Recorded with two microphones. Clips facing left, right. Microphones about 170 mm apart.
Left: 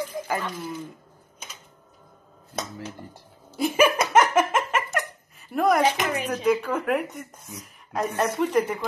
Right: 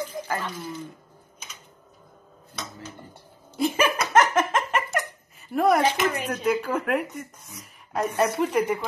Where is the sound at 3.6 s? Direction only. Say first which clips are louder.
Left 3 dB; 10° left (ahead or behind).